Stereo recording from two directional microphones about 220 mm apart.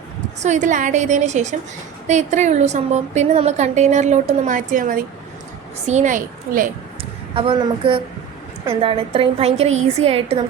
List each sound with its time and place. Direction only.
0.4 s a woman's voice: 35° right (ahead or behind)
7.3 s a woman's voice: 25° right (ahead or behind)